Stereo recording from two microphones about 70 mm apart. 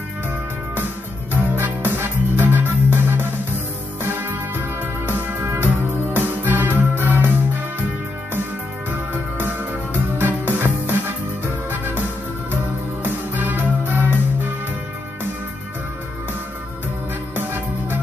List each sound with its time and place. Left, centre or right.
1.3 s music: right
9.1 s music: right
13.0 s music: right
17.4 s music: right